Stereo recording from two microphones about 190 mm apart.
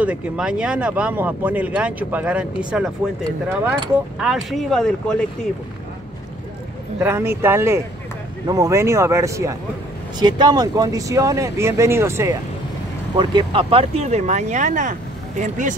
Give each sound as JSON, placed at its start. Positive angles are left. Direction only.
{"t": 0.0, "sound": "speech", "side_deg": -5}
{"t": 4.2, "sound": "speech", "side_deg": 0}
{"t": 7.0, "sound": "speech", "side_deg": -10}